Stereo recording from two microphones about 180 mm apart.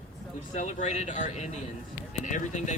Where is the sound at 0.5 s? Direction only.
40° left (ahead or behind).